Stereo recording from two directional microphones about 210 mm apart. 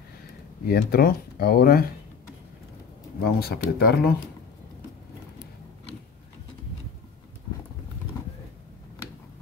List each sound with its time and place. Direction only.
0.7 s speech: 50° left (ahead or behind)
3.2 s speech: 50° left (ahead or behind)